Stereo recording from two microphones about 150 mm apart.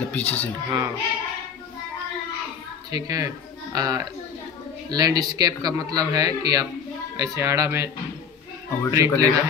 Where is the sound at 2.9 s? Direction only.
25° right (ahead or behind).